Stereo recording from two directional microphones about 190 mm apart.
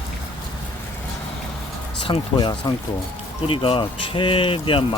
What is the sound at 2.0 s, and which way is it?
Speech, 25° left (ahead or behind).